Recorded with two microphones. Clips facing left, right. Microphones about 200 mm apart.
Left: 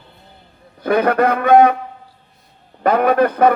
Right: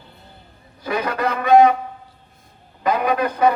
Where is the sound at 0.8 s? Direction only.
55° left (ahead or behind).